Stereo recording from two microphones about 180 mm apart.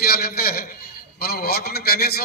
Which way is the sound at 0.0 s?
60° left (ahead or behind).